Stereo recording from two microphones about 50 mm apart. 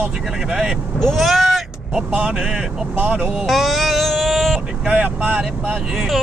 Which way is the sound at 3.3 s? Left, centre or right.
Centre.